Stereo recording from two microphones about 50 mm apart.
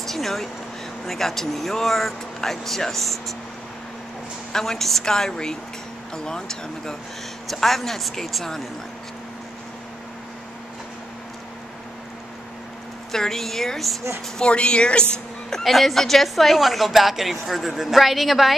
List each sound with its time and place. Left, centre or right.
0.0 s a sound: centre
1.0 s a woman's voice: centre
4.5 s a woman's voice: centre
13.1 s a woman's voice: centre
14.4 s a woman's voice: centre
15.5 s a woman's voice: centre